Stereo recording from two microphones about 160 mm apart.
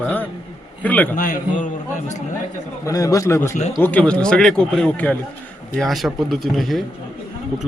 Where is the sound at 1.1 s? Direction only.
55° left (ahead or behind).